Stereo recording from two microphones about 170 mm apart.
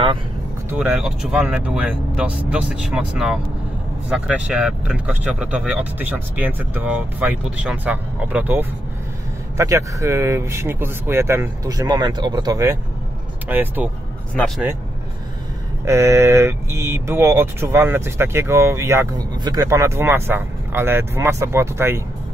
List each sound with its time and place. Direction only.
0.7 s speech: 5° right (ahead or behind)
15.8 s speech: 15° right (ahead or behind)